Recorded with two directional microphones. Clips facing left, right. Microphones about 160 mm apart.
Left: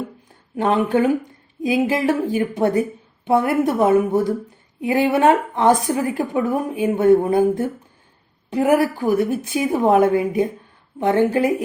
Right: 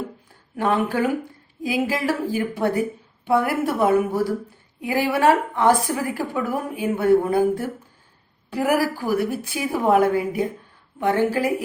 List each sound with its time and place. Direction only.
0.5 s a woman's voice: 20° left (ahead or behind)